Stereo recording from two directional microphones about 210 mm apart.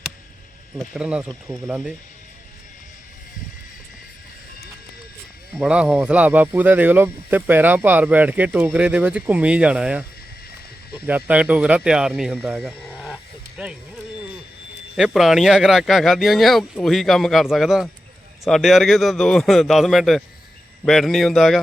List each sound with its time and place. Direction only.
0.8 s speech: 5° right (ahead or behind)
5.5 s speech: 5° right (ahead or behind)
14.9 s speech: centre (ahead or behind)